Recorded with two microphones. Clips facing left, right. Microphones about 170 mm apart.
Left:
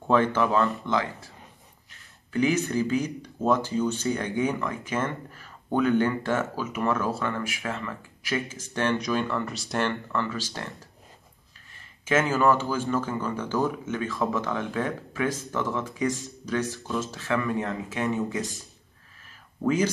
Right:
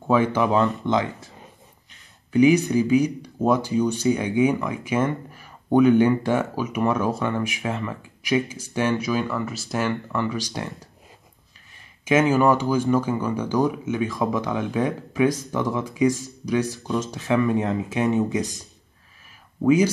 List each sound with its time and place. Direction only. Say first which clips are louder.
0.0 s speech: right 2 dB; 10° right (ahead or behind)
12.0 s speech: right 5 dB; 15° right (ahead or behind)